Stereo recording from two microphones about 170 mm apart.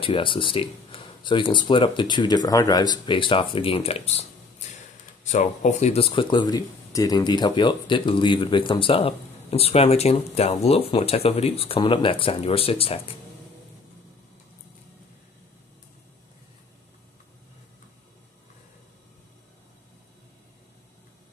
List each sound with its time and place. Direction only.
0.0 s speech: 30° left (ahead or behind)